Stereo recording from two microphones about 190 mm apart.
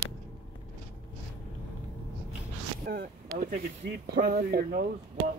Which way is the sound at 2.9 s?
50° right (ahead or behind).